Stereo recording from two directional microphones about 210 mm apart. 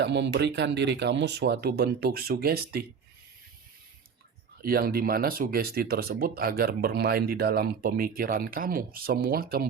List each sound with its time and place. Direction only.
0.0 s speech: 55° right (ahead or behind)
4.6 s speech: 45° right (ahead or behind)